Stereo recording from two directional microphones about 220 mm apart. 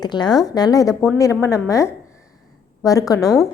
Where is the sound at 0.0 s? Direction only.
20° left (ahead or behind).